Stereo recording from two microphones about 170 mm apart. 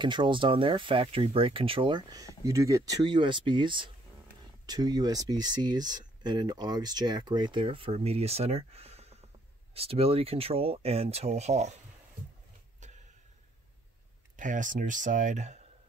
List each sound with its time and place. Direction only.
0.0 s speech: 30° right (ahead or behind)
12.8 s a sound: 45° right (ahead or behind)
14.3 s speech: 50° right (ahead or behind)